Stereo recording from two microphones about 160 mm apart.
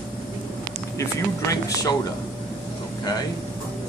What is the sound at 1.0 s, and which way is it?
Speech, 20° left (ahead or behind).